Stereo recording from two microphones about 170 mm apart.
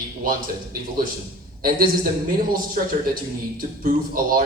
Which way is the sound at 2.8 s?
50° right (ahead or behind).